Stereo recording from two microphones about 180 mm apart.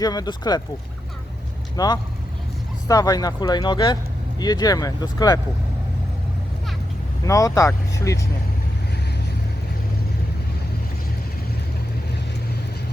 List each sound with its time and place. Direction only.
0.0 s speech: 20° left (ahead or behind)
1.7 s speech: 20° left (ahead or behind)
7.3 s speech: 20° left (ahead or behind)